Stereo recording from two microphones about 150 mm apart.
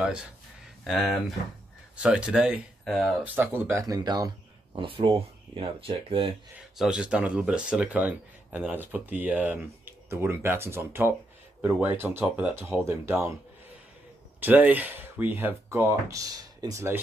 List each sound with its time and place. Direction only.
0.0 s speech: 5° right (ahead or behind)
3.3 s speech: 15° right (ahead or behind)
4.7 s speech: 35° right (ahead or behind)
6.8 s speech: 5° right (ahead or behind)
14.4 s speech: 10° right (ahead or behind)